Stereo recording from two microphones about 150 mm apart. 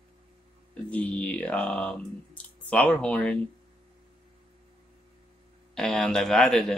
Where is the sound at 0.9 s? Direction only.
10° left (ahead or behind).